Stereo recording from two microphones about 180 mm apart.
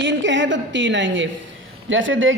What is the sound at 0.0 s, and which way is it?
A woman's voice, 90° right.